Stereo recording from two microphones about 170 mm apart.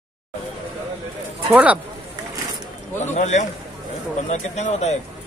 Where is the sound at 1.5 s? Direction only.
10° right (ahead or behind).